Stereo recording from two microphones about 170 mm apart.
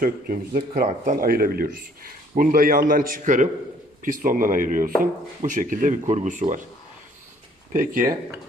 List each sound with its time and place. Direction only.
0.0 s speech: 55° right (ahead or behind)
7.7 s speech: 55° right (ahead or behind)